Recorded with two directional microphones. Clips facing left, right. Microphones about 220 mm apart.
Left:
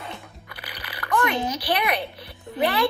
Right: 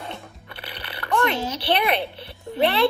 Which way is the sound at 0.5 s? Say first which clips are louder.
Right 3 dB; 25° right (ahead or behind).